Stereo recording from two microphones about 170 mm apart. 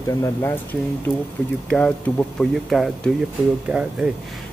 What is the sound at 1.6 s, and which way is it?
Speech, 5° left (ahead or behind).